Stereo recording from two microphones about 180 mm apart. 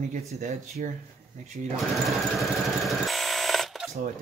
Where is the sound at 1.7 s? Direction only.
Centre (ahead or behind).